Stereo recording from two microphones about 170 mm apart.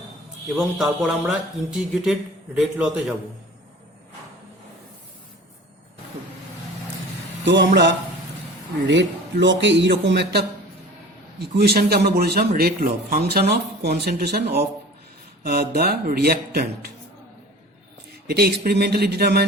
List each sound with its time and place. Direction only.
0.5 s speech: centre (ahead or behind)
7.4 s a man's voice: 90° right
11.3 s speech: 70° right (ahead or behind)
18.3 s speech: 65° right (ahead or behind)